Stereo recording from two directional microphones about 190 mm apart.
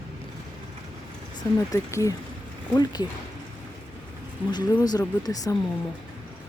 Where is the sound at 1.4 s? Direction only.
15° left (ahead or behind).